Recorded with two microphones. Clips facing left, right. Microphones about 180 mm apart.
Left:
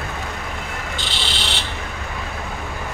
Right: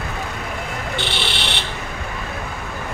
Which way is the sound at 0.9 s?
65° right (ahead or behind).